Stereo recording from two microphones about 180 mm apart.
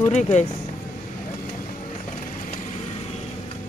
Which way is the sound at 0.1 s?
40° left (ahead or behind).